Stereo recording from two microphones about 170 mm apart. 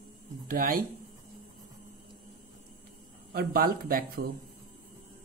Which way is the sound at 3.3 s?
60° right (ahead or behind).